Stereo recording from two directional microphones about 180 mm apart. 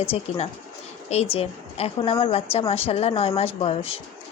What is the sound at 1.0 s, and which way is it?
A woman's voice, 35° left (ahead or behind).